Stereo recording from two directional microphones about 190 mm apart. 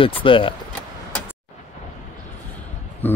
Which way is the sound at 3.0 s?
10° left (ahead or behind).